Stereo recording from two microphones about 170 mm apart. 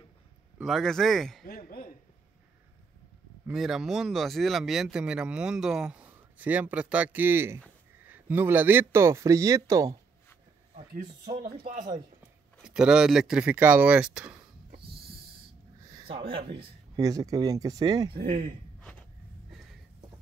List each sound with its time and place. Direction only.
0.6 s speech: centre (ahead or behind)
1.5 s speech: 60° left (ahead or behind)
3.5 s speech: centre (ahead or behind); by 9.8 s 20° right (ahead or behind)
10.7 s speech: 45° right (ahead or behind)
11.4 s speech: 60° right (ahead or behind)
12.5 s speech: 5° right (ahead or behind)
15.9 s a sound: 30° right (ahead or behind)
16.5 s speech: 20° right (ahead or behind)